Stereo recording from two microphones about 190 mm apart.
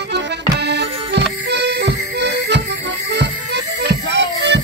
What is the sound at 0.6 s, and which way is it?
Music, 60° right (ahead or behind).